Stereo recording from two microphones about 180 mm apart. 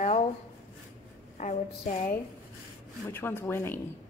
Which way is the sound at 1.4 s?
45° left (ahead or behind).